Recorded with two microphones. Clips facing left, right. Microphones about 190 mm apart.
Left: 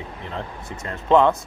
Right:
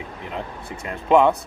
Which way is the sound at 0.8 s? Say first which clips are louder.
Even; 15° right (ahead or behind).